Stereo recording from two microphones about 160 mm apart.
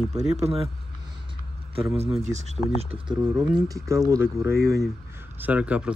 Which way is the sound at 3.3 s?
5° right (ahead or behind).